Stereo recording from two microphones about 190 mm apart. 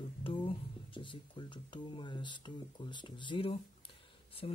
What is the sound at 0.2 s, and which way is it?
Speech, 25° left (ahead or behind).